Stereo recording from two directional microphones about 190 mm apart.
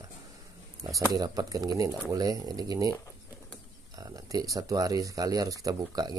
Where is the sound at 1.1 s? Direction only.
20° right (ahead or behind).